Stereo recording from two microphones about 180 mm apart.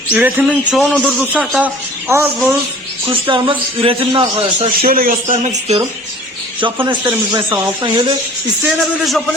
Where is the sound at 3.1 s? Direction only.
30° right (ahead or behind).